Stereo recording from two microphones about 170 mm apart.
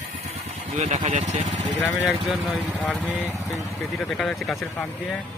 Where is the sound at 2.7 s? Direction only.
10° left (ahead or behind).